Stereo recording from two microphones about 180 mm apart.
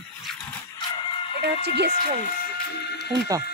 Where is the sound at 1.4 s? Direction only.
65° right (ahead or behind).